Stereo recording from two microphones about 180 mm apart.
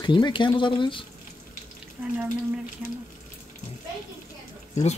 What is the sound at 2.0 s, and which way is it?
Speech, 10° right (ahead or behind).